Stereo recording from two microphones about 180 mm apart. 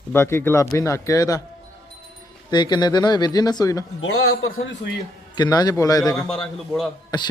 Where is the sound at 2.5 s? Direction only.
25° left (ahead or behind).